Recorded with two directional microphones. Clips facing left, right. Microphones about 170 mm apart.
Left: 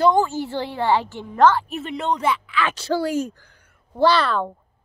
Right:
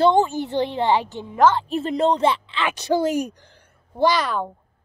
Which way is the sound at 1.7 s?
35° right (ahead or behind).